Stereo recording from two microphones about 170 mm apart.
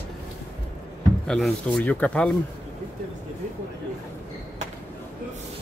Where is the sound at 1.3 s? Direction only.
Centre (ahead or behind).